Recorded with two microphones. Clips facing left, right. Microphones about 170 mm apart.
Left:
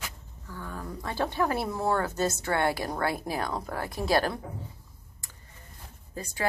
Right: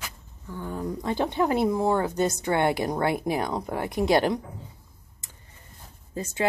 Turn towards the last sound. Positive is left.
turn(degrees=-25)  # may be behind; listen again after turning